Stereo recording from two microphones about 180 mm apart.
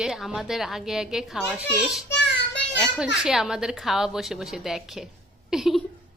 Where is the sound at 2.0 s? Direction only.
80° left.